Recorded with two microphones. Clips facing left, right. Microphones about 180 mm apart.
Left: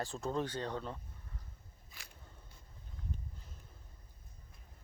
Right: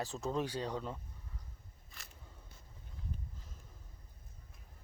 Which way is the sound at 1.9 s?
Centre (ahead or behind).